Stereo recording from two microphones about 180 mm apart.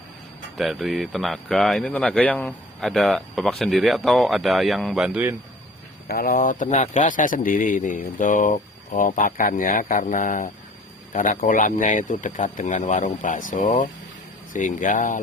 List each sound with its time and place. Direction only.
0.5 s speech: centre (ahead or behind)
6.1 s a man's voice: 55° left (ahead or behind)